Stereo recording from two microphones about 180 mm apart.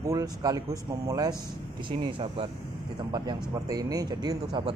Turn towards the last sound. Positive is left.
turn(degrees=-20)  # may be behind; listen again after turning